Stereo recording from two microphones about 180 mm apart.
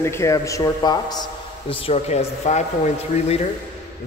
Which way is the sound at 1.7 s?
35° left (ahead or behind).